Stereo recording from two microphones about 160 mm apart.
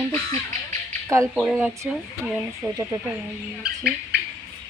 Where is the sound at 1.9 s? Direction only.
5° right (ahead or behind).